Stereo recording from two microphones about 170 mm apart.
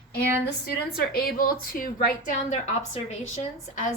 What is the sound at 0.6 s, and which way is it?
A woman's voice, 65° left (ahead or behind).